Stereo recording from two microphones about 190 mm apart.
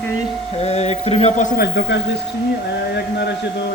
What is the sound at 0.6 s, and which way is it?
Speech, 35° left (ahead or behind).